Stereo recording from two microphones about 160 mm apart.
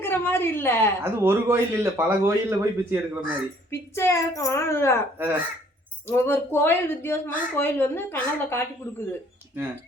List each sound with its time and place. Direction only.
0.0 s speech: 15° left (ahead or behind)
1.0 s speech: 15° right (ahead or behind)
3.7 s speech: 15° left (ahead or behind)
5.1 s speech: 10° right (ahead or behind)
6.1 s speech: 15° left (ahead or behind)